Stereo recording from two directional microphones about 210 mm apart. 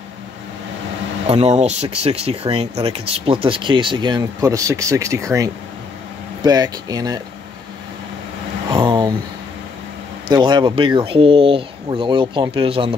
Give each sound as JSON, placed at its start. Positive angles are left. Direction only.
{"t": 1.2, "sound": "speech", "side_deg": -30}
{"t": 8.6, "sound": "vehicle", "side_deg": -20}
{"t": 10.3, "sound": "speech", "side_deg": -20}